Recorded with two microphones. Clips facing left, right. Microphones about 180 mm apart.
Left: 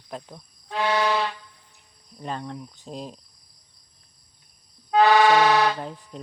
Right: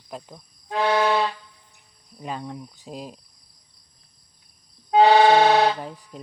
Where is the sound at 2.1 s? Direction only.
10° right (ahead or behind).